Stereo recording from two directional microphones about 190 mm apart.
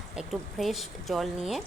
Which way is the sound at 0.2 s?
Centre (ahead or behind).